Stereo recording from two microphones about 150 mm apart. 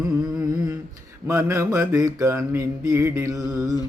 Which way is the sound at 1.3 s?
20° right (ahead or behind).